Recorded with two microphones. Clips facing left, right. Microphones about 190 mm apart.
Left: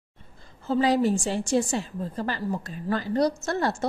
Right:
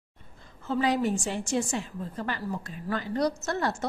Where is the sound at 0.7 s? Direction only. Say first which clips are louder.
Left 4 dB; 35° left (ahead or behind).